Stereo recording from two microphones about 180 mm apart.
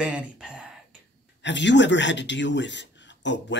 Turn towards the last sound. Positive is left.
turn(degrees=85)